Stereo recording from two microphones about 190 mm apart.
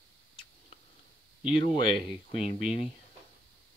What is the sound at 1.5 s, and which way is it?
Speech, 25° left (ahead or behind).